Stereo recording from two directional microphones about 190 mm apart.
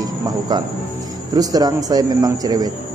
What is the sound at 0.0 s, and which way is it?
Cricket, 20° right (ahead or behind).